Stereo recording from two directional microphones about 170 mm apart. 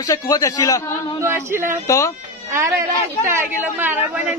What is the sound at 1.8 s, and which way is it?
Speech, 20° left (ahead or behind).